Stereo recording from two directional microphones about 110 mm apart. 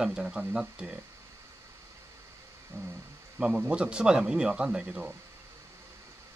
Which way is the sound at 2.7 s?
20° right (ahead or behind).